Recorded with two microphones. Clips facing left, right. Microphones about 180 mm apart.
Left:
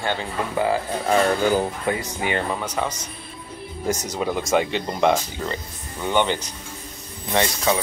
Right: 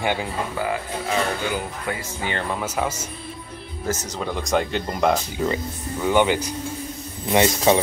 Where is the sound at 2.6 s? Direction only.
5° right (ahead or behind).